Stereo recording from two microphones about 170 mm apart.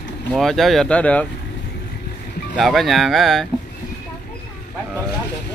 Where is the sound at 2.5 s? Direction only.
Centre (ahead or behind).